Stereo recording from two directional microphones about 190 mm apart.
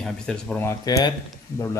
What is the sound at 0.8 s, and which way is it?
Speech, 20° left (ahead or behind).